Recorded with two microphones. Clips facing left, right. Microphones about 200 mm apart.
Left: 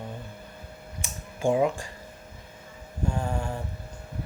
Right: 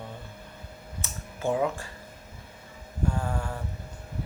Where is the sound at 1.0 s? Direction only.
15° left (ahead or behind).